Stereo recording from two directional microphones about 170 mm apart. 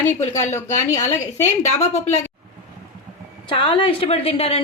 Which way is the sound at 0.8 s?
45° left (ahead or behind).